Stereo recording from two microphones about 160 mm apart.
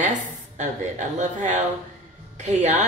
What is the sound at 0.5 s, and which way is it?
A woman's voice, 50° right (ahead or behind).